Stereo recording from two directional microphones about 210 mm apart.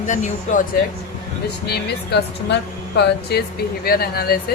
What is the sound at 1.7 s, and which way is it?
Speech, 50° left (ahead or behind).